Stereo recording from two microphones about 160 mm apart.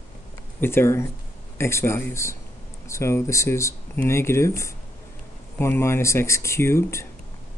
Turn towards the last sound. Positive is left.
turn(degrees=15)  # may be behind; listen again after turning